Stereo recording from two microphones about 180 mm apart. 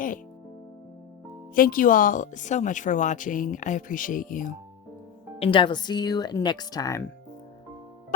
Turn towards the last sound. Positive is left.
turn(degrees=20)  # may be behind; listen again after turning